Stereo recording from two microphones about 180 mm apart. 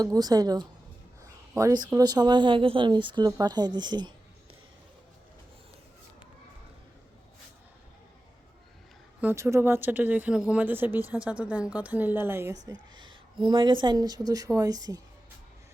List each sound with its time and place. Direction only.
0.0 s speech: 20° right (ahead or behind)
1.2 s a sound: 15° right (ahead or behind)
1.9 s speech: 20° right (ahead or behind)
9.2 s speech: 15° right (ahead or behind)
13.0 s a sound: 25° right (ahead or behind)
13.8 s speech: 20° right (ahead or behind)